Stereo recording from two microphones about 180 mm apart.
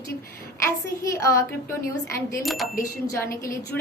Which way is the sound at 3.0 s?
15° left (ahead or behind).